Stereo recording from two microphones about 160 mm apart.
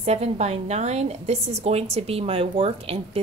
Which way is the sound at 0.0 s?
40° right (ahead or behind).